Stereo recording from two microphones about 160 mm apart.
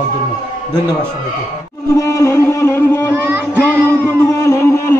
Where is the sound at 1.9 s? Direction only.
20° left (ahead or behind).